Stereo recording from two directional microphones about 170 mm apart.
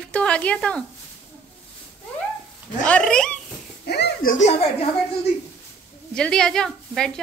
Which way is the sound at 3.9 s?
75° left (ahead or behind).